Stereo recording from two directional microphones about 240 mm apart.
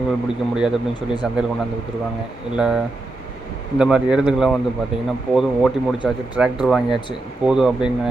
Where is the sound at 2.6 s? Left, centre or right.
Centre.